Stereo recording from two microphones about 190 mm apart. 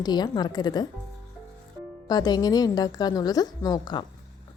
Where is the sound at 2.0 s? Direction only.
20° left (ahead or behind).